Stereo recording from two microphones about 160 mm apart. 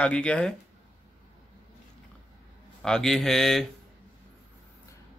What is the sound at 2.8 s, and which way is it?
Speech, 5° left (ahead or behind).